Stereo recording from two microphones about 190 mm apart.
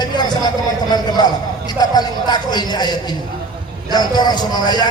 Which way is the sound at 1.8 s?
20° left (ahead or behind).